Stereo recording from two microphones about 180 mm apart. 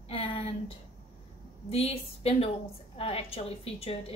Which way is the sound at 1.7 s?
35° left (ahead or behind).